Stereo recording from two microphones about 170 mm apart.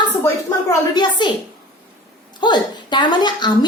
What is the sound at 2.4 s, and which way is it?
A woman's voice, 25° left (ahead or behind).